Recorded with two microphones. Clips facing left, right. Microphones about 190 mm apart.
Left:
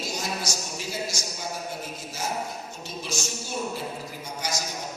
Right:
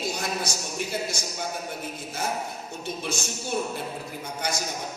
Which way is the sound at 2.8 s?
55° right (ahead or behind).